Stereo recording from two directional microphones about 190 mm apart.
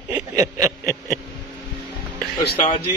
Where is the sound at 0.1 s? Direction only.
20° right (ahead or behind).